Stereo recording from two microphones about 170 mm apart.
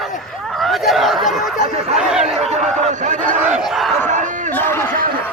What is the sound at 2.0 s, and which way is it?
Chatter, 5° right (ahead or behind).